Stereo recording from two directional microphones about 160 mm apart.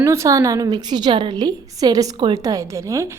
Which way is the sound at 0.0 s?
15° right (ahead or behind).